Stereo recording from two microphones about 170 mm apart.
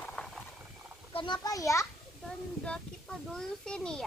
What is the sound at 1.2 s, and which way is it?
Speech, 25° left (ahead or behind).